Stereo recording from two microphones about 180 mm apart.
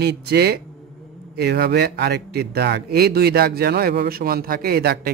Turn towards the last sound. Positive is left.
turn(degrees=-60)  # may be behind; listen again after turning